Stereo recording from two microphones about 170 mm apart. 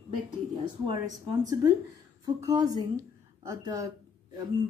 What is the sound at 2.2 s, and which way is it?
A woman's voice, 25° right (ahead or behind).